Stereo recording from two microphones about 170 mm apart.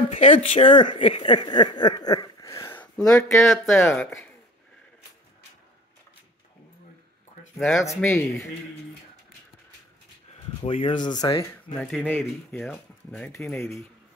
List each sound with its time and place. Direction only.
0.1 s speech: 35° left (ahead or behind)
0.6 s speech: 30° left (ahead or behind); by 4.3 s 10° left (ahead or behind)
7.5 s speech: centre (ahead or behind)
7.8 s speech: 15° left (ahead or behind)
10.6 s speech: 35° left (ahead or behind)
11.8 s speech: 5° left (ahead or behind)